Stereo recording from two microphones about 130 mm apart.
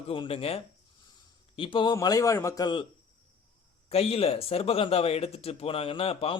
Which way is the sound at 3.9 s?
50° left (ahead or behind).